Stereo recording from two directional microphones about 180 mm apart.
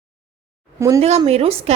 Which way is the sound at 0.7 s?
15° right (ahead or behind).